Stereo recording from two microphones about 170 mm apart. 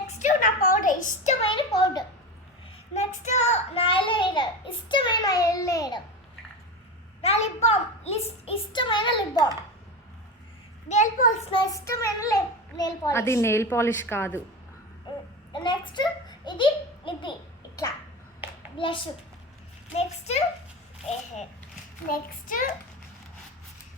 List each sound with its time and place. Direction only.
0.2 s a sound: 50° left (ahead or behind)
1.5 s a sound: 25° left (ahead or behind)
2.9 s a child's voice: 40° left (ahead or behind); by 6.0 s 20° left (ahead or behind)
7.2 s a child's voice: 40° left (ahead or behind)
10.8 s a child's voice: 45° left (ahead or behind)
11.6 s a child's voice: 20° left (ahead or behind)
15.5 s a woman's voice: 25° left (ahead or behind)
20.0 s a child's voice: 40° left (ahead or behind)
22.1 s a child's voice: 55° left (ahead or behind)